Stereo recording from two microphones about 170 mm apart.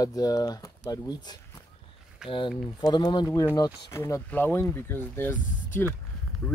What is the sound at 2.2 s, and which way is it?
Speech, 5° right (ahead or behind).